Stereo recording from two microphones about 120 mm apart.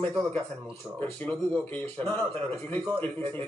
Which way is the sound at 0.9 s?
10° left (ahead or behind).